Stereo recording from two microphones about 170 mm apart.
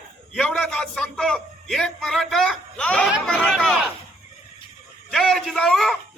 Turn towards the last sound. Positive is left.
turn(degrees=5)  # may be behind; listen again after turning